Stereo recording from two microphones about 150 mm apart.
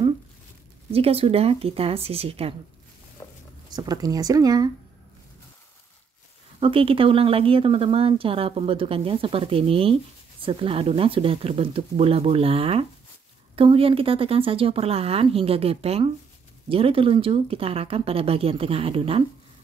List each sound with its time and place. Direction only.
0.9 s speech: 40° right (ahead or behind)
3.7 s speech: 25° right (ahead or behind)
6.6 s speech: 40° right (ahead or behind)